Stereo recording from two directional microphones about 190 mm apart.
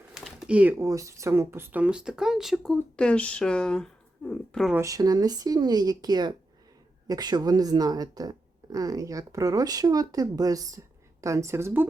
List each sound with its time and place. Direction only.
0.1 s speech: centre (ahead or behind)
4.7 s a woman's voice: 15° right (ahead or behind)